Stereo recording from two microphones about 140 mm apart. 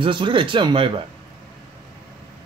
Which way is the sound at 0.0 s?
35° right (ahead or behind).